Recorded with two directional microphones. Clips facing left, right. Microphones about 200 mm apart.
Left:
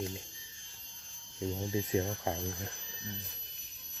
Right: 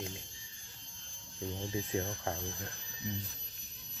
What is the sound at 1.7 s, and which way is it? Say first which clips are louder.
Speech: left 4 dB; 20° left (ahead or behind).